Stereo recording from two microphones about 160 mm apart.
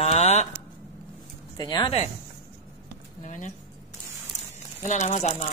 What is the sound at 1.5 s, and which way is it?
Speech, 25° left (ahead or behind).